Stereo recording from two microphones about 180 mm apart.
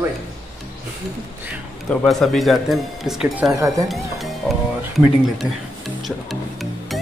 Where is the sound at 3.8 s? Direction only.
Centre (ahead or behind).